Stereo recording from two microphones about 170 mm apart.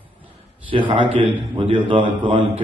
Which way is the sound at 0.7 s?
30° right (ahead or behind).